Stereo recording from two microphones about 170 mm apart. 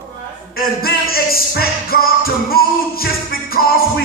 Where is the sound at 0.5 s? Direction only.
60° left (ahead or behind).